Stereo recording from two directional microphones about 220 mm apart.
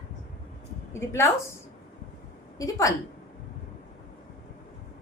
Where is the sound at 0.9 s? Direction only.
10° left (ahead or behind).